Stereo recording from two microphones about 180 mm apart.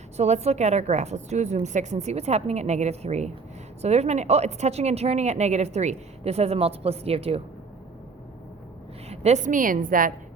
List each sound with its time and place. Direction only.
0.2 s a woman's voice: 40° right (ahead or behind)
9.0 s a woman's voice: 40° right (ahead or behind)